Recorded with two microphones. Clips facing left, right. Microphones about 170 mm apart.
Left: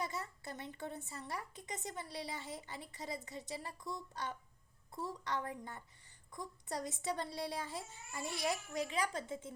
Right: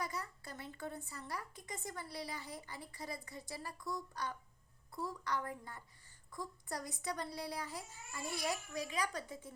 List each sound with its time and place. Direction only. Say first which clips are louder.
0.0 s a woman's voice: left 1 dB; 25° left (ahead or behind)